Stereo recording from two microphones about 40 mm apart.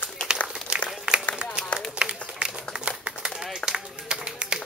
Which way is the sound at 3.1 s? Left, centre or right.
Right.